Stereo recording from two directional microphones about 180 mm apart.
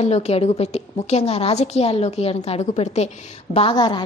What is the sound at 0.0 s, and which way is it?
A woman's voice, 35° left (ahead or behind).